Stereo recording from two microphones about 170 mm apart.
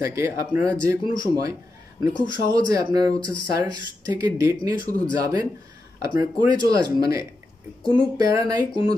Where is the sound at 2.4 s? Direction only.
20° right (ahead or behind).